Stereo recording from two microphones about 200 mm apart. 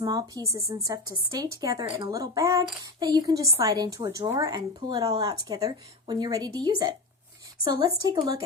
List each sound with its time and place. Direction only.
0.0 s speech: 20° right (ahead or behind)